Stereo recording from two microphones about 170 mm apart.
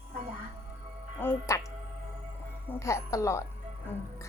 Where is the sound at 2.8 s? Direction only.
15° left (ahead or behind).